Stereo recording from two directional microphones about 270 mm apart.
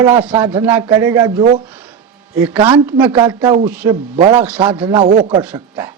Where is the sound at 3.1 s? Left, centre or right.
Centre.